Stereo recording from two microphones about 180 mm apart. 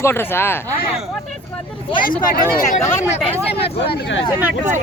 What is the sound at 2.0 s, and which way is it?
Speech, 50° left (ahead or behind).